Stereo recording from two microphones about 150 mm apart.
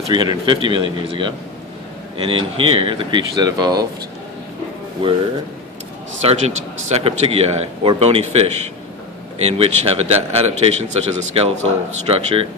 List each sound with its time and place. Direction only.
0.1 s speech: 30° right (ahead or behind)
6.2 s speech: 45° right (ahead or behind)